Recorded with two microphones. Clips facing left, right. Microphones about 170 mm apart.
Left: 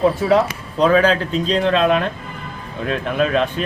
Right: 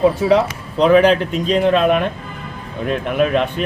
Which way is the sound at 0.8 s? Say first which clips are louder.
Right 3 dB; 20° right (ahead or behind).